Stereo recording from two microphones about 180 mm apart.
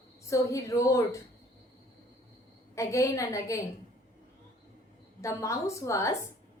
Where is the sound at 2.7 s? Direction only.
15° left (ahead or behind).